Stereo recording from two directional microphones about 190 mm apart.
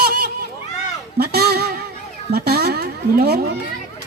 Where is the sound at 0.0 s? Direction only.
55° right (ahead or behind).